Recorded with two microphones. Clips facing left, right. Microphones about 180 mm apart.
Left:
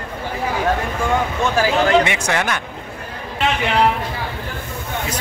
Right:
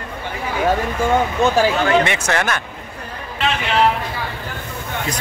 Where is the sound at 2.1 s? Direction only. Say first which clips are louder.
Right 1 dB; 15° left (ahead or behind).